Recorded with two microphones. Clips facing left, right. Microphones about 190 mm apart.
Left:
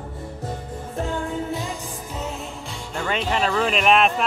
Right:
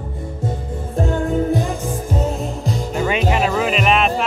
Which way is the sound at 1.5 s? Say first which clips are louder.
Right 8 dB; 50° right (ahead or behind).